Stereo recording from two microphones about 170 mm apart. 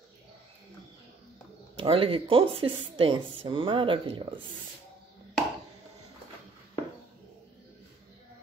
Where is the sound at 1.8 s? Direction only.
35° right (ahead or behind).